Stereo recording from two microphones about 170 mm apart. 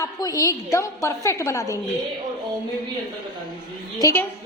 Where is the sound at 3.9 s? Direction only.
15° left (ahead or behind).